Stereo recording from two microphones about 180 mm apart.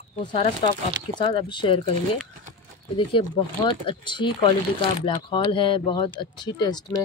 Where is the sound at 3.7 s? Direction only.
30° left (ahead or behind).